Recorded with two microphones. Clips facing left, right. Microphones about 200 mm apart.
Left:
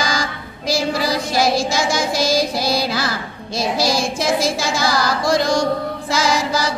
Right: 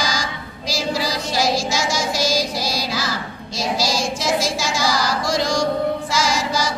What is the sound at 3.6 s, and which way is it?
Singing, 55° left (ahead or behind).